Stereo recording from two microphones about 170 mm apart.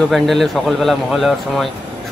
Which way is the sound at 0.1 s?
Centre (ahead or behind).